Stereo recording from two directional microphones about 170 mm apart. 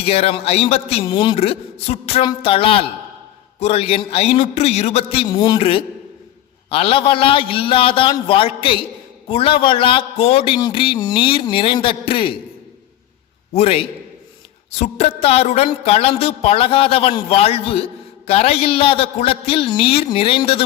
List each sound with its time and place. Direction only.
0.0 s a woman's voice: 35° left (ahead or behind)
1.4 s a woman's voice: 40° left (ahead or behind)
13.5 s a woman's voice: 40° left (ahead or behind)